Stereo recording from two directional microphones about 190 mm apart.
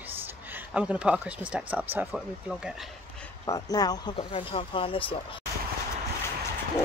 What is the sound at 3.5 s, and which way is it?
Speech, 20° left (ahead or behind).